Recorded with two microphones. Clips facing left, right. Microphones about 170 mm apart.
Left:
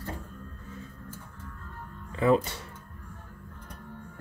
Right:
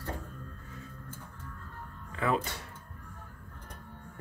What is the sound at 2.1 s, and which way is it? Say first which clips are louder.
Speech: left 7 dB; 25° left (ahead or behind).